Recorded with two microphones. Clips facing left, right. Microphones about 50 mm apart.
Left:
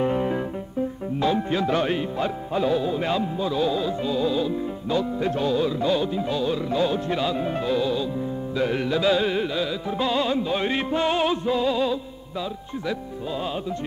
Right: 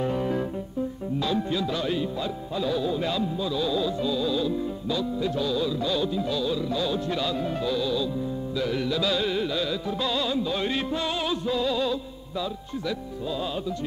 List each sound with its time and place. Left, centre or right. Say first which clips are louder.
0.0 s music: left 3 dB; left
1.2 s speech: left 5 dB; left
7.2 s speech: left 3 dB; left
8.5 s music: left 4 dB; left; by 9.8 s centre
9.8 s speech: left 4 dB; left